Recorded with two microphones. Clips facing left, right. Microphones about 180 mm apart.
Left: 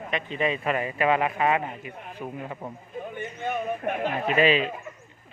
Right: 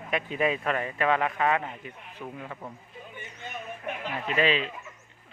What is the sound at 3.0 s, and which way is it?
Speech, 55° left (ahead or behind).